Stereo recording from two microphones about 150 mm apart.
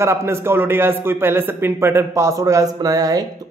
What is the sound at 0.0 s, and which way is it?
Speech, 15° right (ahead or behind).